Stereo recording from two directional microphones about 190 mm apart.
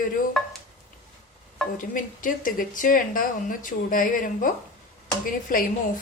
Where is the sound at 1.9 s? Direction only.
45° left (ahead or behind).